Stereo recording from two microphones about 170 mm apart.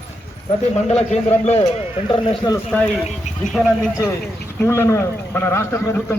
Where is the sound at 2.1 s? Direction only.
25° left (ahead or behind).